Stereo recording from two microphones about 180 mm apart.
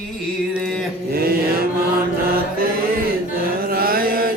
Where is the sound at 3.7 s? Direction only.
55° right (ahead or behind).